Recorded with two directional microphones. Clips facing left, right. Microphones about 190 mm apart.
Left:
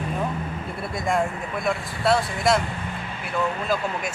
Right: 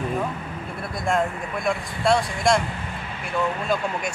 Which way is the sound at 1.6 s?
Centre (ahead or behind).